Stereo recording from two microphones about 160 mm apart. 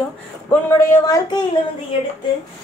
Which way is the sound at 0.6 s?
20° left (ahead or behind).